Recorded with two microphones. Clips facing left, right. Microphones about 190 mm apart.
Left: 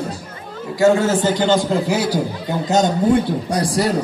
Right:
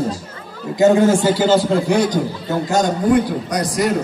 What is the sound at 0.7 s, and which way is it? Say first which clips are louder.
Speech: right 2 dB; 20° right (ahead or behind).